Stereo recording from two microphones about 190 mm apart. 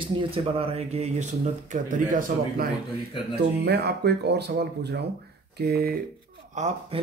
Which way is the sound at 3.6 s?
60° right (ahead or behind).